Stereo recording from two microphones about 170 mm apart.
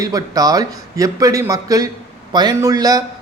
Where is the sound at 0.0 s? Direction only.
20° right (ahead or behind).